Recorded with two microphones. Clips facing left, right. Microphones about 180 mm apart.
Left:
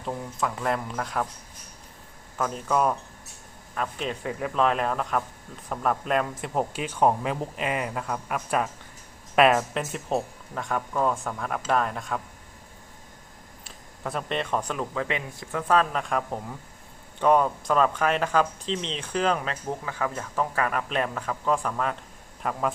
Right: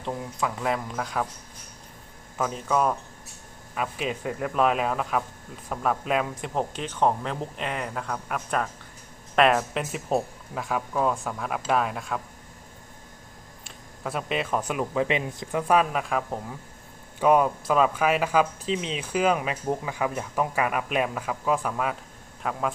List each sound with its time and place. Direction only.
0.0 s speech: centre (ahead or behind)
2.4 s speech: centre (ahead or behind)
13.7 s speech: 5° right (ahead or behind)